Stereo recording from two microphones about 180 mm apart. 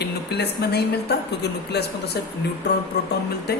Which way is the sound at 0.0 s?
65° left (ahead or behind).